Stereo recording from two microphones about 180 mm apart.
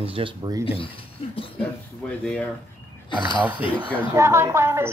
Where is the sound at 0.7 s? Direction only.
30° left (ahead or behind).